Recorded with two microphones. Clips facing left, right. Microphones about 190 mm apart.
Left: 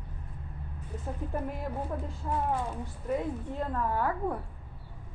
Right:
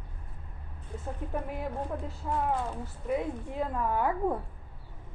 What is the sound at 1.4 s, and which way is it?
A woman's voice, centre (ahead or behind).